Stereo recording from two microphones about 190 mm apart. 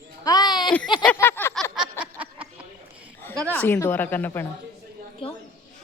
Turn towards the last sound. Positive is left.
turn(degrees=30)  # may be behind; listen again after turning